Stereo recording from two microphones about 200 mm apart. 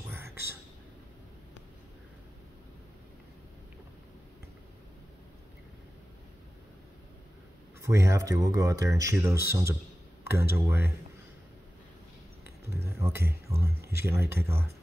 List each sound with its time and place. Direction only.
0.1 s a sound: 10° right (ahead or behind)
7.8 s speech: 15° right (ahead or behind)
12.6 s speech: 10° right (ahead or behind)